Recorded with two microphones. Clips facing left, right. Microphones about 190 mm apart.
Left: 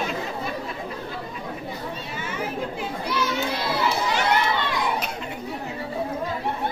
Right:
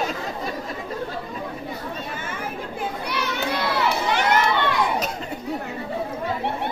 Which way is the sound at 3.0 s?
65° right (ahead or behind).